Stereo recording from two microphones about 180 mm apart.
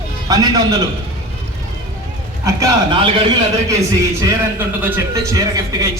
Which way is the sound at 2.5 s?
20° right (ahead or behind).